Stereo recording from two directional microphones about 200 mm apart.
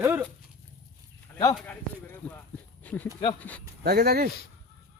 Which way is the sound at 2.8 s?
10° left (ahead or behind).